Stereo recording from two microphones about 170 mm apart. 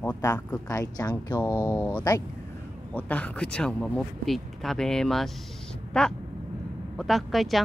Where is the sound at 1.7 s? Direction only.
10° left (ahead or behind).